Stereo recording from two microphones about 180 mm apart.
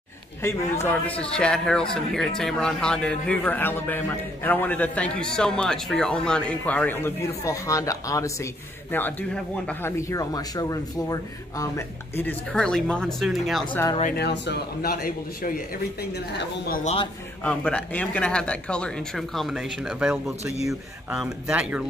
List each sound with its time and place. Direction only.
0.4 s a man's voice: 10° left (ahead or behind)
14.1 s a man's voice: 70° left (ahead or behind)
16.0 s a woman's voice: 65° left (ahead or behind)
16.8 s a man's voice: 30° left (ahead or behind)
17.4 s speech: 5° left (ahead or behind)